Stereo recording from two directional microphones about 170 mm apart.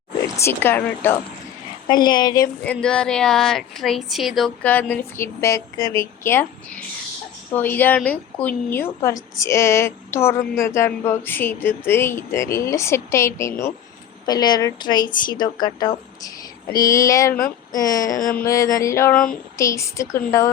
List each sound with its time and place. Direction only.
0.3 s a woman's voice: 15° left (ahead or behind)
1.9 s a woman's voice: 25° left (ahead or behind)
2.6 s speech: 5° left (ahead or behind)
4.6 s a woman's voice: 10° left (ahead or behind)
18.2 s a sound: 55° left (ahead or behind)
18.4 s a woman's voice: 20° left (ahead or behind)
19.1 s speech: 5° left (ahead or behind)
19.5 s a woman's voice: 20° left (ahead or behind)